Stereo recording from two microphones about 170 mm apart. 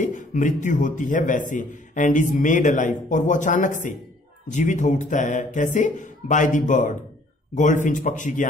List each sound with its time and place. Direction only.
0.0 s speech: 45° left (ahead or behind)